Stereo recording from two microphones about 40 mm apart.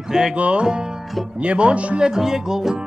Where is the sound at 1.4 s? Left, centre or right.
Right.